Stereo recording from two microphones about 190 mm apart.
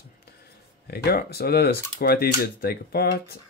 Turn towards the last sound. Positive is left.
turn(degrees=55)  # may be behind; listen again after turning